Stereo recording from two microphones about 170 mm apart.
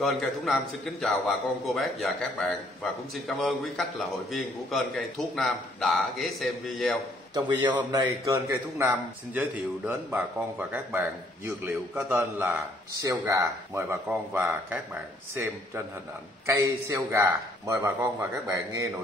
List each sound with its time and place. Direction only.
1.0 s a man's voice: centre (ahead or behind)
7.3 s a man's voice: 25° right (ahead or behind)